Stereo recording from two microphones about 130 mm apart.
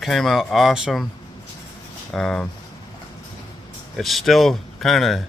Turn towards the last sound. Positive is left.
turn(degrees=0)  # may be behind; listen again after turning